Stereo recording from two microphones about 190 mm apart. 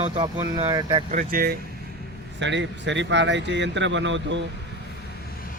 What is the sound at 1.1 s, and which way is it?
Speech, 45° right (ahead or behind).